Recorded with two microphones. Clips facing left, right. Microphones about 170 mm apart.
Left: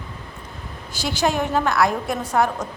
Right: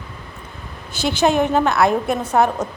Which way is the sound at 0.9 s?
20° right (ahead or behind).